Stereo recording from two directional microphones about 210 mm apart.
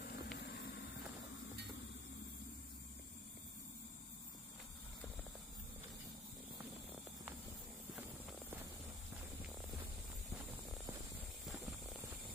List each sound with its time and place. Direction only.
0.0 s vehicle: 55° left (ahead or behind)
7.9 s walk: 5° right (ahead or behind)
11.4 s snake: centre (ahead or behind)